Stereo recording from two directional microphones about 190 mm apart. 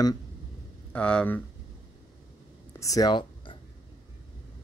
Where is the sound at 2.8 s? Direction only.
20° left (ahead or behind).